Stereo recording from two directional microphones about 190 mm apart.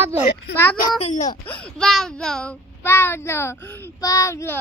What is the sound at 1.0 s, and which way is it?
Speech, 35° left (ahead or behind).